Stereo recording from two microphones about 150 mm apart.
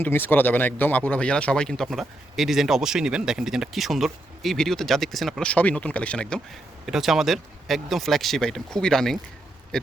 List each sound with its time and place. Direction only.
0.0 s speech: 15° left (ahead or behind)
6.8 s speech: centre (ahead or behind)